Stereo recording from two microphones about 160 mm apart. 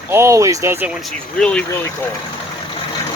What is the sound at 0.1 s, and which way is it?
Speech, 15° right (ahead or behind).